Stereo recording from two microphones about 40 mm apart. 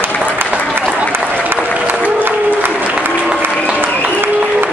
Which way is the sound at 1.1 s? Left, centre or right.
Right.